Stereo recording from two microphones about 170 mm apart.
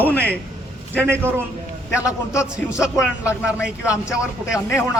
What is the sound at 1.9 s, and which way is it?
Speech, 5° right (ahead or behind).